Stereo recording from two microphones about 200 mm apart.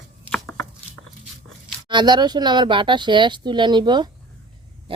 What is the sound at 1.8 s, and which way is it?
Speech, 20° right (ahead or behind).